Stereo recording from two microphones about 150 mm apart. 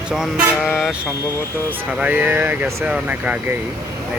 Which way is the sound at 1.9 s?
10° right (ahead or behind).